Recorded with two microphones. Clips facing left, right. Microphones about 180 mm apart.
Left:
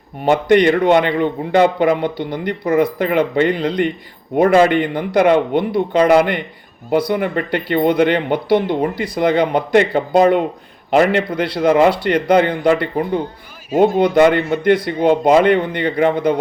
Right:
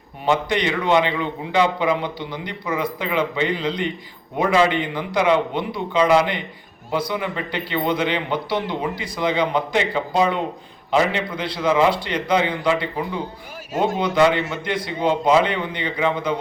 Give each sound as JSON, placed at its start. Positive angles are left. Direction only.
{"t": 0.3, "sound": "a man's voice", "side_deg": 55}